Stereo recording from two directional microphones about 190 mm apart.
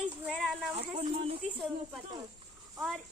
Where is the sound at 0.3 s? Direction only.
Centre (ahead or behind).